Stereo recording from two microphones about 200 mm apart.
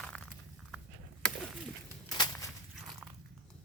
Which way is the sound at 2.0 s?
20° left (ahead or behind).